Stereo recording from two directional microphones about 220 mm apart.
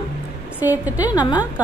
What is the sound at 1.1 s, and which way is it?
Speech, 20° left (ahead or behind).